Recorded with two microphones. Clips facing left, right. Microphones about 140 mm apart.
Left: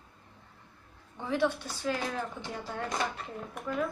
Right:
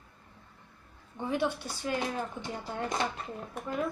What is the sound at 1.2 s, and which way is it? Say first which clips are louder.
A woman's voice: left 1 dB; 10° right (ahead or behind).